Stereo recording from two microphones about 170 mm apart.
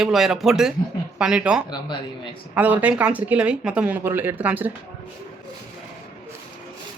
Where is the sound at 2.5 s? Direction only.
10° right (ahead or behind).